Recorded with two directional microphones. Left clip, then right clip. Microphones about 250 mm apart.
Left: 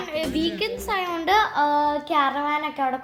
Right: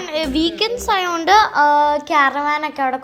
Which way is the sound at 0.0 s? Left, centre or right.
Right.